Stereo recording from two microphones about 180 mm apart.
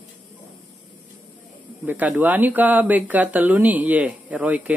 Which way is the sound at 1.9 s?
10° right (ahead or behind).